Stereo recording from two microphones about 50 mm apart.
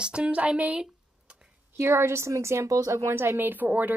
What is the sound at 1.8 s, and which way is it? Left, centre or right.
A woman's voice, right.